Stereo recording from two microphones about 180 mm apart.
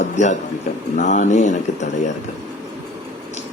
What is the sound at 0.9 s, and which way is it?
A man's voice, 40° left (ahead or behind).